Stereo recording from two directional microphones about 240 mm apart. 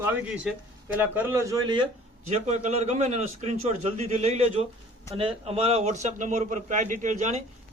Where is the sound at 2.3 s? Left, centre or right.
Right.